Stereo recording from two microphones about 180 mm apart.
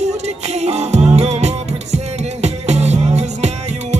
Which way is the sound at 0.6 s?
35° right (ahead or behind).